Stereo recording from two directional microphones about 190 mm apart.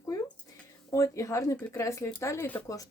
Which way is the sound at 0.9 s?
15° left (ahead or behind).